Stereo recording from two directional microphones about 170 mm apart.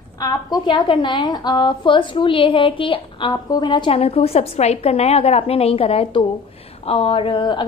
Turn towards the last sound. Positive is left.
turn(degrees=25)  # may be behind; listen again after turning